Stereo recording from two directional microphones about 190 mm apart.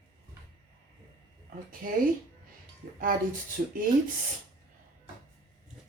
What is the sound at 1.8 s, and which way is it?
Speech, 45° right (ahead or behind).